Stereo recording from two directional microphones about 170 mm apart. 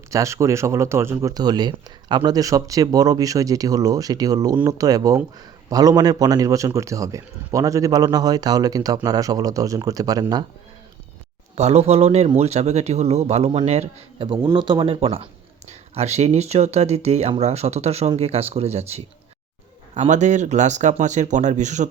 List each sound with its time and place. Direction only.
0.1 s speech: 15° right (ahead or behind)
11.5 s speech: 40° right (ahead or behind)